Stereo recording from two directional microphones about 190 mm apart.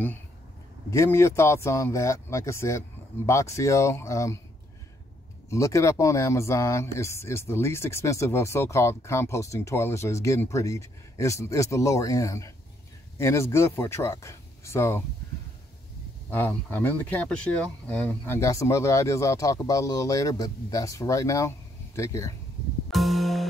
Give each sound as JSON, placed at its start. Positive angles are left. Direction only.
{"t": 0.8, "sound": "speech", "side_deg": 15}
{"t": 5.5, "sound": "speech", "side_deg": 15}
{"t": 16.3, "sound": "speech", "side_deg": 10}
{"t": 22.8, "sound": "music", "side_deg": 0}